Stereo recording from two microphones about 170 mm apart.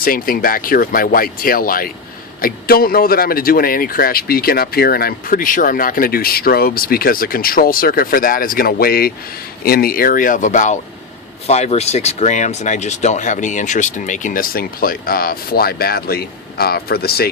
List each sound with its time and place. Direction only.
0.0 s a man's voice: 60° left (ahead or behind)